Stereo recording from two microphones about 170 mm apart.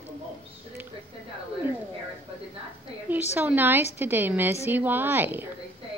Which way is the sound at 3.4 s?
10° right (ahead or behind).